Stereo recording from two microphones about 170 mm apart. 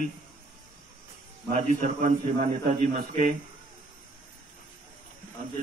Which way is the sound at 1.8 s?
50° right (ahead or behind).